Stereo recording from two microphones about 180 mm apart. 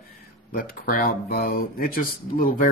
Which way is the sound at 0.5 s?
55° left (ahead or behind).